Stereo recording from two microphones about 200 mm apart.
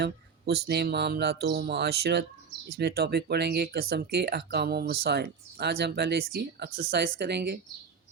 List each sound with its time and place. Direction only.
0.0 s speech: 55° right (ahead or behind)